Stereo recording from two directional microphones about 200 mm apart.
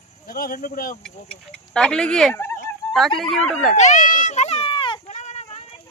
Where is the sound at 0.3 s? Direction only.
45° left (ahead or behind).